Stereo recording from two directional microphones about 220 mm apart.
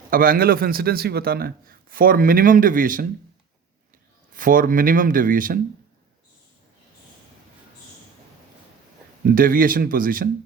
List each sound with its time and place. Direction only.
0.1 s a man's voice: 40° right (ahead or behind)
4.4 s a man's voice: 40° right (ahead or behind)
9.2 s a man's voice: 40° right (ahead or behind)